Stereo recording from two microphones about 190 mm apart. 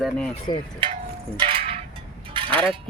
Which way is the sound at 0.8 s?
30° right (ahead or behind).